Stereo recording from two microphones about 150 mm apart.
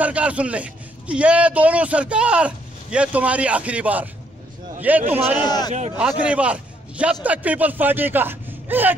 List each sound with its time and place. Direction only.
0.0 s a man's voice: 10° right (ahead or behind)
5.1 s a man's voice: 15° right (ahead or behind)
5.7 s a man's voice: 45° right (ahead or behind)
5.9 s a man's voice: 10° right (ahead or behind)